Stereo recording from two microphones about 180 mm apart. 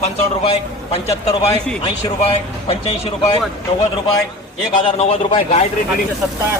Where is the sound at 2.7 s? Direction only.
30° left (ahead or behind).